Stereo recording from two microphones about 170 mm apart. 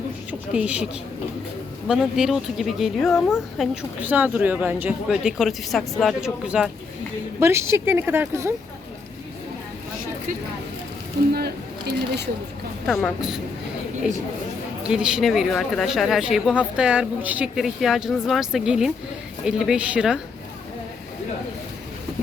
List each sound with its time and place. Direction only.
0.3 s a sound: 5° right (ahead or behind)
1.9 s speech: 5° right (ahead or behind)
7.3 s speech: 15° right (ahead or behind)
11.3 s a sound: 70° right (ahead or behind)
12.9 s speech: centre (ahead or behind)
14.8 s speech: 5° right (ahead or behind)